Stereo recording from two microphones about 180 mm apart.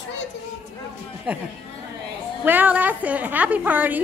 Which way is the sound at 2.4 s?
10° right (ahead or behind).